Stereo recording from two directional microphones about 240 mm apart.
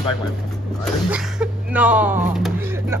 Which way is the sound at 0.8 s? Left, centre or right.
Centre.